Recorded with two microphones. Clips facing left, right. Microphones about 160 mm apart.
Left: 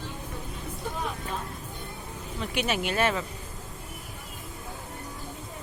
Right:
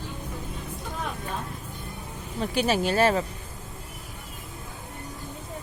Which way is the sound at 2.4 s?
35° right (ahead or behind).